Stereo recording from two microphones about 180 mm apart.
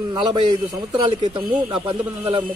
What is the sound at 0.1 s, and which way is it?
A man's voice, 25° right (ahead or behind).